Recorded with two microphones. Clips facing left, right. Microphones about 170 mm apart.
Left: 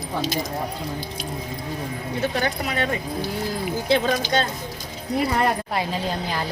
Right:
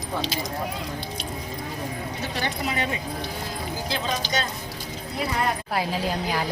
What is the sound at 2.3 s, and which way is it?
Speech, 55° left (ahead or behind).